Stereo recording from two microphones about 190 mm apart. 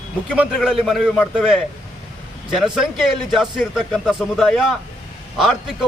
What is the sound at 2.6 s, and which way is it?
Speech, centre (ahead or behind).